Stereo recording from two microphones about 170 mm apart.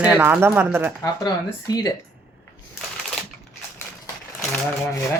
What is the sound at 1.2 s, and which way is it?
Speech, 20° left (ahead or behind).